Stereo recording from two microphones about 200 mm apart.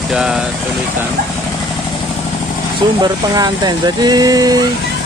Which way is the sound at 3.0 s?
20° right (ahead or behind).